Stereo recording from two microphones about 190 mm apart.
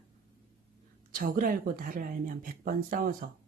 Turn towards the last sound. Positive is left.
turn(degrees=-45)  # may be behind; listen again after turning